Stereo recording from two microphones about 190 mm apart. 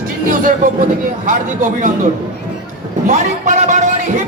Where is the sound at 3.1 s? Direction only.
40° right (ahead or behind).